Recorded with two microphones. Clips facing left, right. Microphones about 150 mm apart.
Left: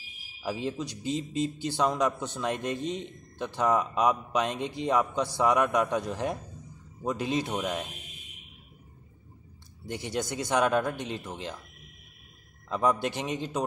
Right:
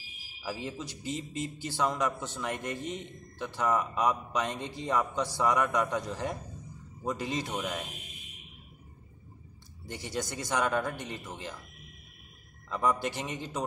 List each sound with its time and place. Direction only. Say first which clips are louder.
0.4 s a man's voice: left 5 dB; 20° left (ahead or behind)
9.8 s a man's voice: left 4 dB; 20° left (ahead or behind)
12.6 s a man's voice: left 3 dB; 20° left (ahead or behind)